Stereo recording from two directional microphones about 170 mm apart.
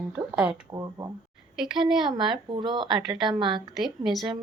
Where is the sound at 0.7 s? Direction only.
20° right (ahead or behind).